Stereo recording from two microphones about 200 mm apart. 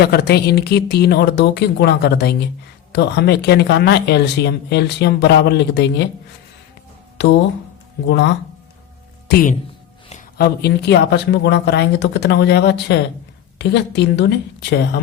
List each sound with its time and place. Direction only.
0.0 s speech: 55° left (ahead or behind)
8.0 s speech: 60° left (ahead or behind)